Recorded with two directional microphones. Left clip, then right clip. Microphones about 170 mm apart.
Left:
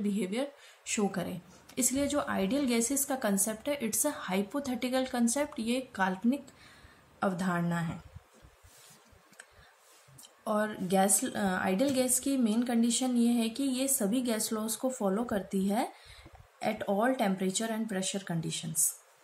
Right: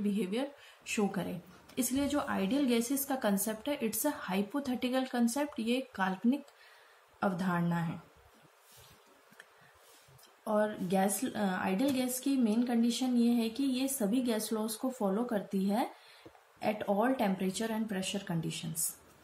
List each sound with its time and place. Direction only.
0.0 s a woman's voice: 15° left (ahead or behind)
10.4 s a woman's voice: 25° left (ahead or behind)